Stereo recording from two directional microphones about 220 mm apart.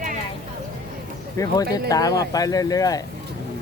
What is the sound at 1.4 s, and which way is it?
Speech, 15° left (ahead or behind).